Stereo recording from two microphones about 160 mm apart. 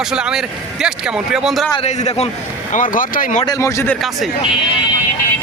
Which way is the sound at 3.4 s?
20° left (ahead or behind).